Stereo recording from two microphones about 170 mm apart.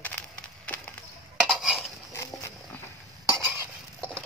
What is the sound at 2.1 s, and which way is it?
Horse, 15° left (ahead or behind).